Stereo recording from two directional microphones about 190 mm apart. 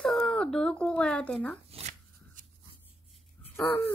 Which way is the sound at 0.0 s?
5° left (ahead or behind).